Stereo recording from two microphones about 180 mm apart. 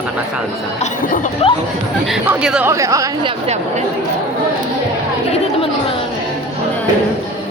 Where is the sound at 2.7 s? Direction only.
20° right (ahead or behind).